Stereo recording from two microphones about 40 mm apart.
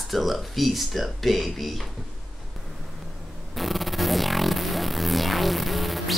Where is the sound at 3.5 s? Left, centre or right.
Centre.